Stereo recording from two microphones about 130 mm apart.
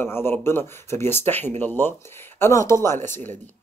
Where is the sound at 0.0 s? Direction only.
15° left (ahead or behind).